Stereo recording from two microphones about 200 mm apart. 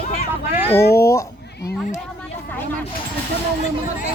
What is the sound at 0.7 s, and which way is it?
Speech, 55° left (ahead or behind).